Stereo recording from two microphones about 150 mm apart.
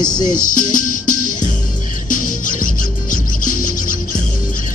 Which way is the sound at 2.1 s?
65° left (ahead or behind).